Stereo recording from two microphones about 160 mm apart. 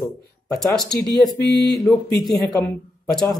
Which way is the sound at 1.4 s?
90° left.